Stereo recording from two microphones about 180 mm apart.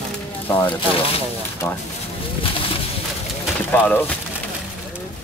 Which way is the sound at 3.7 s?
10° left (ahead or behind).